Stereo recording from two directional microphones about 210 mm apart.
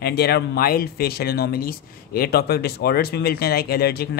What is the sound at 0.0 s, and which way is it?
Speech, 50° left (ahead or behind).